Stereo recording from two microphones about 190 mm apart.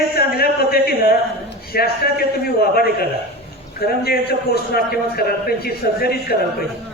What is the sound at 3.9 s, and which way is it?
A man's voice, 55° left (ahead or behind).